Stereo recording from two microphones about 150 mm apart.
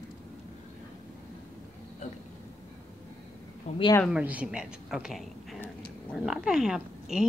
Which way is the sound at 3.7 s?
50° left (ahead or behind).